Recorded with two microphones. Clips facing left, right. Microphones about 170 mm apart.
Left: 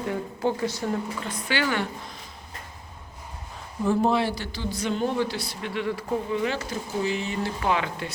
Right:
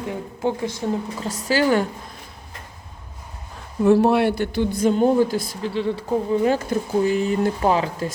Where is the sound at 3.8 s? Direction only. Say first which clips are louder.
Right 7 dB; 70° right (ahead or behind); by 5.7 s 45° right (ahead or behind).